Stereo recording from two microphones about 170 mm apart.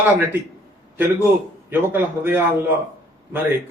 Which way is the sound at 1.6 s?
10° right (ahead or behind).